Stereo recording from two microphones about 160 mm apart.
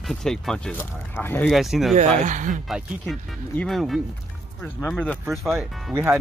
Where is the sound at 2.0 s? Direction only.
50° right (ahead or behind).